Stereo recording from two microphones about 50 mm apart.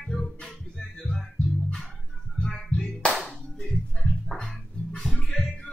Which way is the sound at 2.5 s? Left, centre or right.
Centre.